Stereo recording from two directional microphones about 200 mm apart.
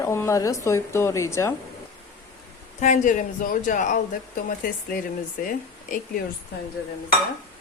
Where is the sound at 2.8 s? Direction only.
40° left (ahead or behind).